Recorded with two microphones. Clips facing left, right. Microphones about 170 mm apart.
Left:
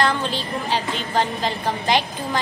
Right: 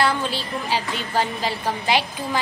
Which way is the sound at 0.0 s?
10° right (ahead or behind).